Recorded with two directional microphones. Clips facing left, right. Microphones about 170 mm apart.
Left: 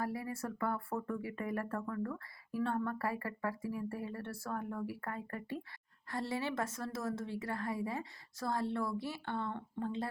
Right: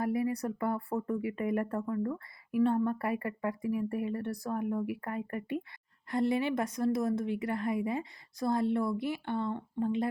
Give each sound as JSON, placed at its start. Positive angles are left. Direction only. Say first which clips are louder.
{"t": 0.0, "sound": "a woman's voice", "louder": "right 8 dB", "side_deg": -20}